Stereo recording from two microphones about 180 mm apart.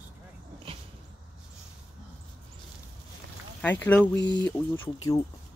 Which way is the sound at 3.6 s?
10° left (ahead or behind).